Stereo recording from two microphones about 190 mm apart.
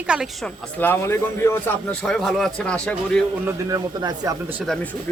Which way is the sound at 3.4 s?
20° right (ahead or behind).